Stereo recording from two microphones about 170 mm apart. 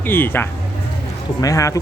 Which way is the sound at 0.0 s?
10° left (ahead or behind).